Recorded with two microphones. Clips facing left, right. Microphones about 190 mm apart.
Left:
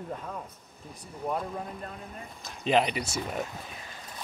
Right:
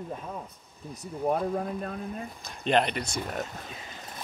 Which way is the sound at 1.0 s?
45° right (ahead or behind).